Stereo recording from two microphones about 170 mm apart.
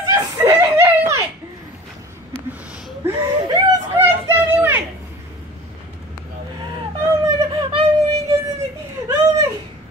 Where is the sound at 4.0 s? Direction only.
15° right (ahead or behind).